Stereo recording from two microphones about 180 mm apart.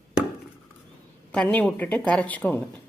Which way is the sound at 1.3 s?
5° left (ahead or behind).